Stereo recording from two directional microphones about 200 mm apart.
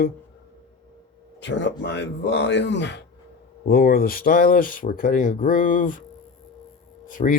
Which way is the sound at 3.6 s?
50° left (ahead or behind).